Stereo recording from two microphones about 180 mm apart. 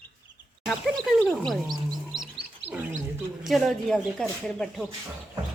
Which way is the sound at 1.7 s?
20° right (ahead or behind).